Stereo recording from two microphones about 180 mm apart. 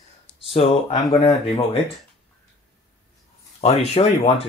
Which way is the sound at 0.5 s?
30° left (ahead or behind).